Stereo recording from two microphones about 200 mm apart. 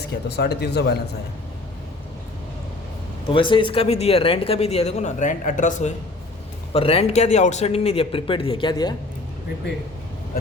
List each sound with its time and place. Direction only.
0.1 s speech: 55° left (ahead or behind)
3.2 s speech: 25° left (ahead or behind)